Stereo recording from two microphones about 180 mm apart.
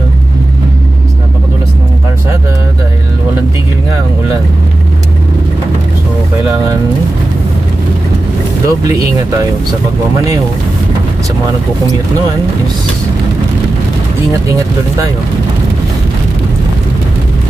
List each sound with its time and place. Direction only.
8.6 s speech: 20° right (ahead or behind)